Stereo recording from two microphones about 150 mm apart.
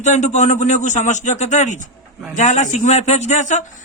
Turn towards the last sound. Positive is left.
turn(degrees=50)  # may be behind; listen again after turning